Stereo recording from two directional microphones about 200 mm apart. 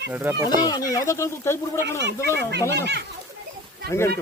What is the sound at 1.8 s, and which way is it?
Speech, 60° right (ahead or behind).